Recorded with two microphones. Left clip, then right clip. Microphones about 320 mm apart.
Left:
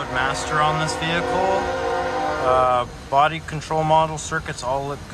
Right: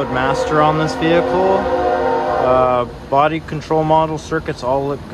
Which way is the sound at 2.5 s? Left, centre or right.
Centre.